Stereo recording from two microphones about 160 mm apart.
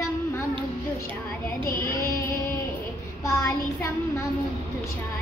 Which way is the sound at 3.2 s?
20° left (ahead or behind).